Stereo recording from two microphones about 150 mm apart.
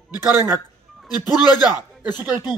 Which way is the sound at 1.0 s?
25° left (ahead or behind).